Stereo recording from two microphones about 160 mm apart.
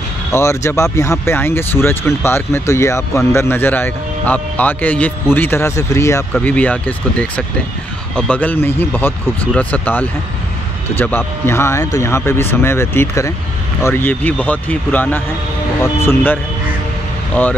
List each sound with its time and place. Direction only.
0.3 s speech: 15° left (ahead or behind)